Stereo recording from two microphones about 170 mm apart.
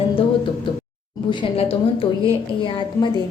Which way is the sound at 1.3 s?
30° left (ahead or behind).